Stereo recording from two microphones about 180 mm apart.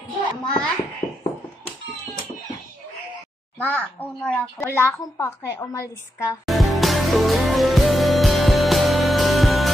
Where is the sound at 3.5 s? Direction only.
10° left (ahead or behind).